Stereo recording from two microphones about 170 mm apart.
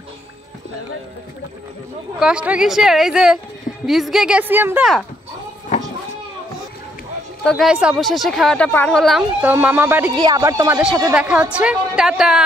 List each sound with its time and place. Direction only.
2.1 s speech: 5° right (ahead or behind)
7.4 s speech: centre (ahead or behind)
9.4 s speech: 10° right (ahead or behind)
10.1 s speech: 25° right (ahead or behind)
11.1 s speech: 5° right (ahead or behind)